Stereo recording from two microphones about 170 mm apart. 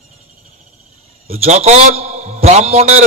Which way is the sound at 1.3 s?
40° right (ahead or behind).